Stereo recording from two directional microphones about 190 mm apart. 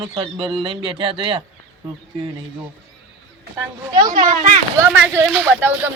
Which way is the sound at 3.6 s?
20° right (ahead or behind).